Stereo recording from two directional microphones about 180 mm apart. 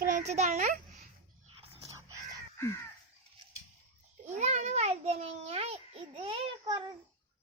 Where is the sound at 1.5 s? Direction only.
35° right (ahead or behind).